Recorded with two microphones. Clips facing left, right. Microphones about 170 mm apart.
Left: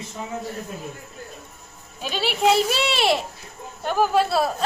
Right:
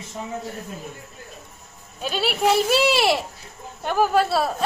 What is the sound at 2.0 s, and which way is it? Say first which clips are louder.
A child's voice: right 1 dB; centre (ahead or behind).